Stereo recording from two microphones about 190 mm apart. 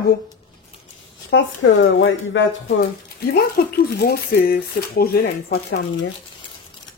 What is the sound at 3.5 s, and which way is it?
Speech, 55° left (ahead or behind).